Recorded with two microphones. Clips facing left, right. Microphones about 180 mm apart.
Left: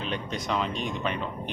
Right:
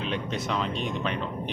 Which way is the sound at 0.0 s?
Centre (ahead or behind).